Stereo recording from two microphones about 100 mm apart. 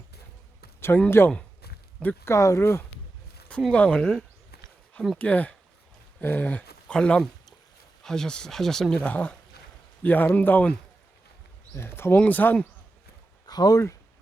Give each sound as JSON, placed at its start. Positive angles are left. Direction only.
{"t": 0.8, "sound": "speech", "side_deg": 20}
{"t": 2.3, "sound": "speech", "side_deg": 30}
{"t": 3.7, "sound": "speech", "side_deg": 10}
{"t": 13.5, "sound": "speech", "side_deg": 40}